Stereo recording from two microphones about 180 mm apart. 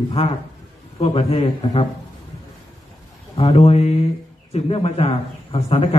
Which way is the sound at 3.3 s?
30° left (ahead or behind).